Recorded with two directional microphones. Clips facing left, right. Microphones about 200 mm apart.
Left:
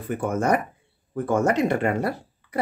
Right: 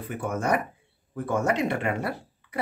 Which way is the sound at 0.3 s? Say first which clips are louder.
Left 3 dB; 45° left (ahead or behind).